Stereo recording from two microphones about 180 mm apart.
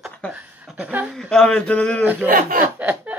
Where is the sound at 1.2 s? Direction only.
5° left (ahead or behind).